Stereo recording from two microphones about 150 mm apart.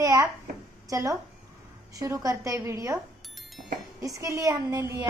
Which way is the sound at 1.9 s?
20° right (ahead or behind).